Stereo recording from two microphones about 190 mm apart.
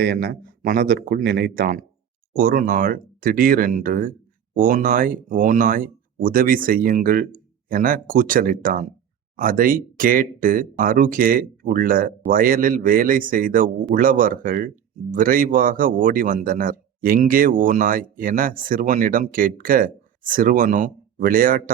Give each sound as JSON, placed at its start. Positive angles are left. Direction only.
{"t": 0.0, "sound": "a man's voice", "side_deg": -55}